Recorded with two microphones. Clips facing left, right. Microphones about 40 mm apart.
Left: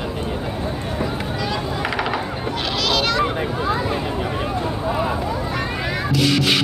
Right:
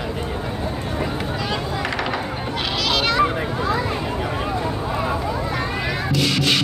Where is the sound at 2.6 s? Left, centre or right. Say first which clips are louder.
Left 1 dB; centre.